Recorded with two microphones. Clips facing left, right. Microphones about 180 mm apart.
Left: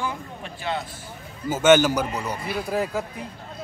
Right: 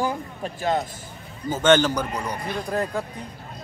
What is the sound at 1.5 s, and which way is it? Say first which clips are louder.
A man's voice: left 2 dB; 10° left (ahead or behind).